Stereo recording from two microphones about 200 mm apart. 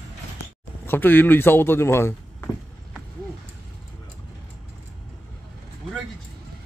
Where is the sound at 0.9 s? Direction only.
10° left (ahead or behind).